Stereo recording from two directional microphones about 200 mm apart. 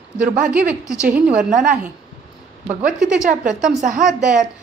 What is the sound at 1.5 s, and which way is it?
Speech, 40° right (ahead or behind).